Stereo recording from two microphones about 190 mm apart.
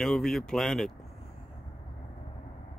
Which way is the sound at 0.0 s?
Centre (ahead or behind).